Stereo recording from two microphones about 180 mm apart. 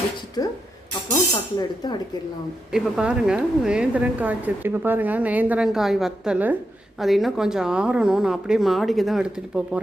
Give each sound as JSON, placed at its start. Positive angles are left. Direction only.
{"t": 0.4, "sound": "speech", "side_deg": 20}
{"t": 1.5, "sound": "speech", "side_deg": 25}
{"t": 2.7, "sound": "speech", "side_deg": -5}